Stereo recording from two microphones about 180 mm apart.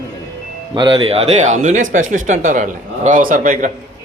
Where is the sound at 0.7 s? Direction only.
30° right (ahead or behind); by 3.7 s 45° right (ahead or behind).